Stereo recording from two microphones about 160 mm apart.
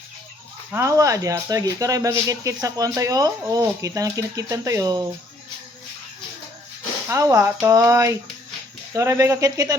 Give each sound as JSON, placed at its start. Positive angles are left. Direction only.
{"t": 0.7, "sound": "speech", "side_deg": -20}
{"t": 7.1, "sound": "speech", "side_deg": -20}